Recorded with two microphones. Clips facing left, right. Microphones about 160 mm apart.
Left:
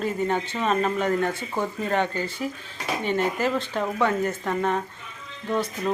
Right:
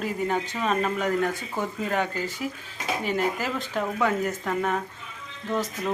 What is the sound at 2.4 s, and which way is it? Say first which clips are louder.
Speech: left 1 dB; 40° left (ahead or behind).